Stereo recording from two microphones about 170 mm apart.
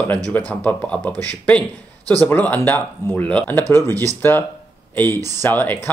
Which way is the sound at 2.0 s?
20° right (ahead or behind).